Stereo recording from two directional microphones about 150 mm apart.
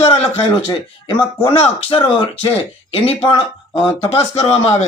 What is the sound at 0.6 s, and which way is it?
A man's voice, 30° left (ahead or behind).